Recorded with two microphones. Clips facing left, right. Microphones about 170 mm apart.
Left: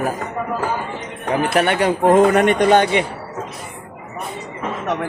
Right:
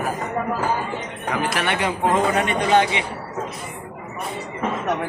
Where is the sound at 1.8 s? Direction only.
55° left (ahead or behind).